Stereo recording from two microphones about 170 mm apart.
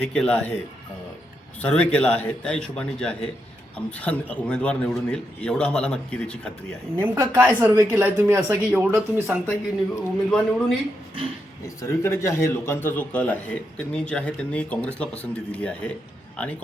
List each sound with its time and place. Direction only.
0.0 s a man's voice: 5° left (ahead or behind)
1.6 s a man's voice: 5° left (ahead or behind)
7.0 s speech: 10° right (ahead or behind)
9.5 s a man's voice: 5° left (ahead or behind)
11.8 s a man's voice: 15° left (ahead or behind)